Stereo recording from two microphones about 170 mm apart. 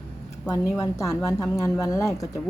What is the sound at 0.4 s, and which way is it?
A woman's voice, 20° left (ahead or behind).